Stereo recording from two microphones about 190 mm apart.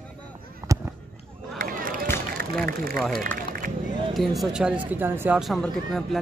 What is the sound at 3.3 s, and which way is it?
Music, 45° right (ahead or behind).